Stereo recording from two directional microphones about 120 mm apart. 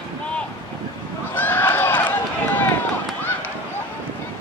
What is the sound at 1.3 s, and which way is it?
Run, 15° left (ahead or behind).